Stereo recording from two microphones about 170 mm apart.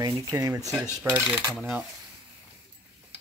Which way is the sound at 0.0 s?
25° right (ahead or behind).